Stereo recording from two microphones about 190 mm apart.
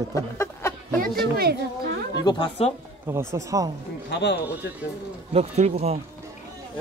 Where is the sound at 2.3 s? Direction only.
30° left (ahead or behind).